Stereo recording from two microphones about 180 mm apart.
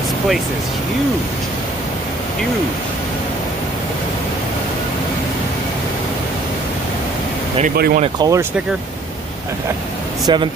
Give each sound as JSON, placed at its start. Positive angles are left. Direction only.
{"t": 7.7, "sound": "speech", "side_deg": -60}
{"t": 8.0, "sound": "speech", "side_deg": -25}
{"t": 10.2, "sound": "speech", "side_deg": -25}